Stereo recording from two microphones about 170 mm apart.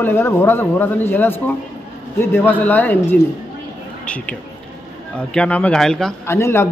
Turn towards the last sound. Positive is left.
turn(degrees=15)  # may be behind; listen again after turning